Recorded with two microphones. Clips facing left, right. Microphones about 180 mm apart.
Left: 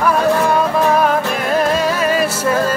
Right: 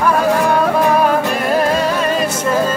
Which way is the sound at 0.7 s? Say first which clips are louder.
Right 1 dB; centre (ahead or behind).